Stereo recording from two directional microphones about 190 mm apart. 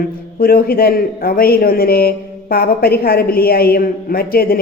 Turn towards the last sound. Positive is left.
turn(degrees=50)  # may be behind; listen again after turning